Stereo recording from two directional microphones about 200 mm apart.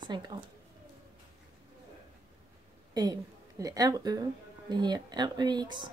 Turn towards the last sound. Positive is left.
turn(degrees=-20)  # may be behind; listen again after turning